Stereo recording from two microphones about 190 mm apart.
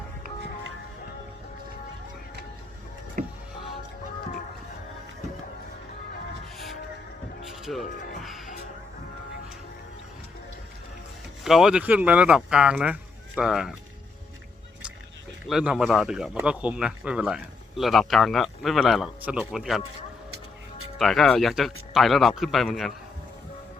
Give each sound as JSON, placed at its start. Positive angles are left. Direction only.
{"t": 3.2, "sound": "music", "side_deg": -45}
{"t": 7.4, "sound": "music", "side_deg": 0}
{"t": 11.4, "sound": "speech", "side_deg": 0}
{"t": 15.4, "sound": "speech", "side_deg": -5}
{"t": 21.0, "sound": "speech", "side_deg": 0}